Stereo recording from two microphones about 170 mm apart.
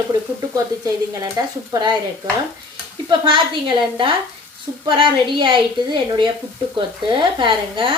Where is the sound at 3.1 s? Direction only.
30° right (ahead or behind).